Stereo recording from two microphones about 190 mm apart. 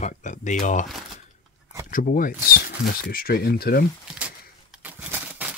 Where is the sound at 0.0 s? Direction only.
40° left (ahead or behind).